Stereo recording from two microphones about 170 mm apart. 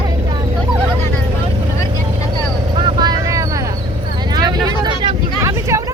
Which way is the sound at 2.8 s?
30° right (ahead or behind).